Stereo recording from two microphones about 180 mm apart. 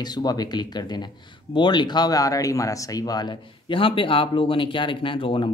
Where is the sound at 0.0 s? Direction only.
20° left (ahead or behind).